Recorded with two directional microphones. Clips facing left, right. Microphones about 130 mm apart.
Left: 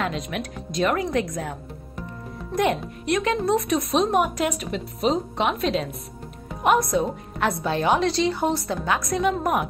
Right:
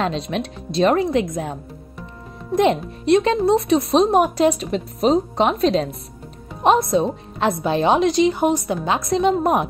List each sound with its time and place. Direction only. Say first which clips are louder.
0.0 s a woman's voice: right 5 dB; 30° right (ahead or behind)